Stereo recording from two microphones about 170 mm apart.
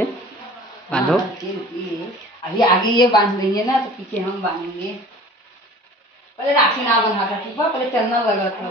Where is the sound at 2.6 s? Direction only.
25° left (ahead or behind).